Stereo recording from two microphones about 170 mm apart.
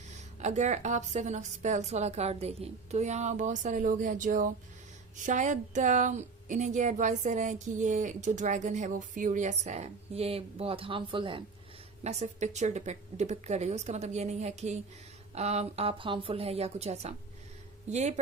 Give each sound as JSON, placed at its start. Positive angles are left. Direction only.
{"t": 0.3, "sound": "speech", "side_deg": -45}
{"t": 12.0, "sound": "speech", "side_deg": -40}